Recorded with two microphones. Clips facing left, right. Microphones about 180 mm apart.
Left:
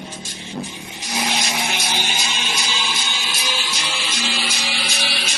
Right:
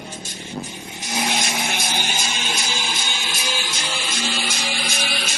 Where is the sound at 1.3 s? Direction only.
50° right (ahead or behind).